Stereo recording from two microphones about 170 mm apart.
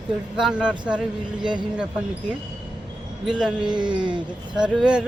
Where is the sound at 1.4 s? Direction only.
25° right (ahead or behind).